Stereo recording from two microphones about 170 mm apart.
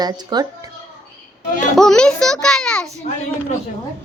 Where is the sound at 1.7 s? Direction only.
5° left (ahead or behind).